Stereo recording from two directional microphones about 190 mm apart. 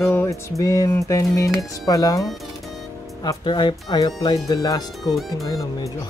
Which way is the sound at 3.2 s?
20° left (ahead or behind).